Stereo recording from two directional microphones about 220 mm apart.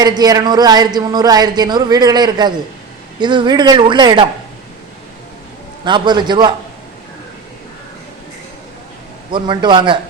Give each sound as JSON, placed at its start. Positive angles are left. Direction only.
{"t": 0.0, "sound": "a man's voice", "side_deg": -20}
{"t": 5.8, "sound": "a man's voice", "side_deg": -20}
{"t": 9.3, "sound": "a man's voice", "side_deg": -20}